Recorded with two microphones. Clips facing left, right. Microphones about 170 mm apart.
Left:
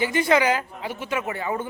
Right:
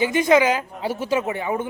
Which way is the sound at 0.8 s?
35° right (ahead or behind).